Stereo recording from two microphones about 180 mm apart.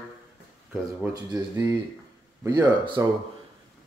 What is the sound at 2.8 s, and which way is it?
Speech, 25° right (ahead or behind).